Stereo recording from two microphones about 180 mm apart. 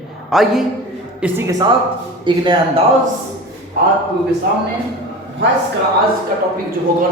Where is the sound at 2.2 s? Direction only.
25° right (ahead or behind).